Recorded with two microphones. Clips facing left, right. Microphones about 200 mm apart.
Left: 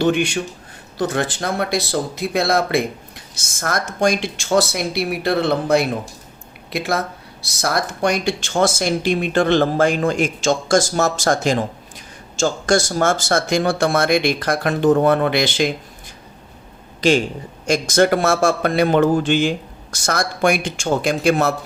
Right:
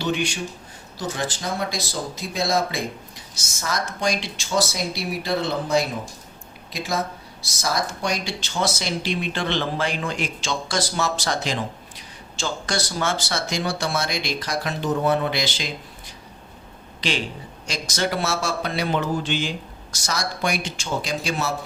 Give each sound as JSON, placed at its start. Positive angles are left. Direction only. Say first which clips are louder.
{"t": 0.0, "sound": "speech", "louder": "left 7 dB", "side_deg": 55}
{"t": 17.0, "sound": "a man's voice", "louder": "left 10 dB", "side_deg": 45}